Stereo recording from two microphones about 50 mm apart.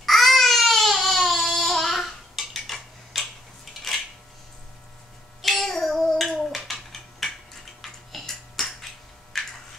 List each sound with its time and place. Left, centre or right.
0.0 s baby cry: centre
5.4 s child singing: centre
7.8 s tick-tock: centre
9.3 s a sound: centre